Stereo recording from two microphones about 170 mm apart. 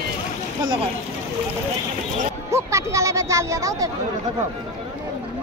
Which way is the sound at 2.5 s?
15° right (ahead or behind).